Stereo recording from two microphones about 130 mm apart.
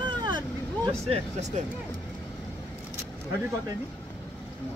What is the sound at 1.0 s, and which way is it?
Speech, 50° right (ahead or behind).